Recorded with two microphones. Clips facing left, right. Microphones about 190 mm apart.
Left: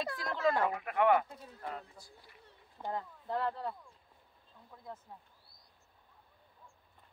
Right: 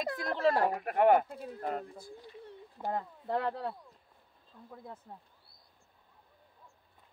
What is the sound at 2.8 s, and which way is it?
Speech, 60° right (ahead or behind).